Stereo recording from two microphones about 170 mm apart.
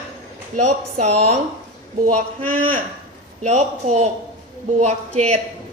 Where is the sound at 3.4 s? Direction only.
40° right (ahead or behind).